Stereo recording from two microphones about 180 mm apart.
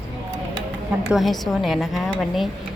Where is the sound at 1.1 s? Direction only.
Centre (ahead or behind).